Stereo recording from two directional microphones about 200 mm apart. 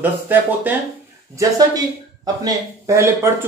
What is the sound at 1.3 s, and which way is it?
Speech, 20° right (ahead or behind).